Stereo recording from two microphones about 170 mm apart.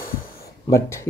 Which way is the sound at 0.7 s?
15° left (ahead or behind).